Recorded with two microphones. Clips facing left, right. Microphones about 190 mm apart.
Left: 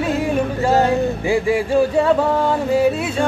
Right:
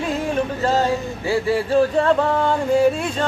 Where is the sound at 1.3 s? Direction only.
15° left (ahead or behind).